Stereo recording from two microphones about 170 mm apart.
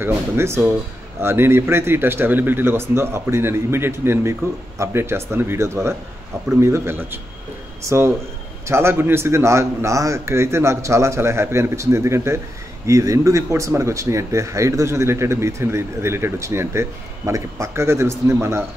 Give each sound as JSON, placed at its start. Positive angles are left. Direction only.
{"t": 0.0, "sound": "a man's voice", "side_deg": -15}